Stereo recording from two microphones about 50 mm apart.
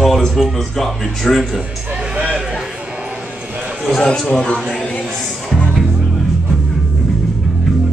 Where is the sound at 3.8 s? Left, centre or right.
Centre.